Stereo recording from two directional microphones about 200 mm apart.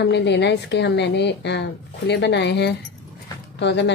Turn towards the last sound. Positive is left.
turn(degrees=60)  # may be behind; listen again after turning